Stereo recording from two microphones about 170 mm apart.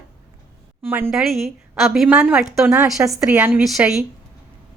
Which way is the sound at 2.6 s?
15° right (ahead or behind).